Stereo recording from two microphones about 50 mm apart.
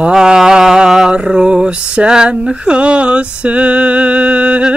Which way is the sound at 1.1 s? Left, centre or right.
Centre.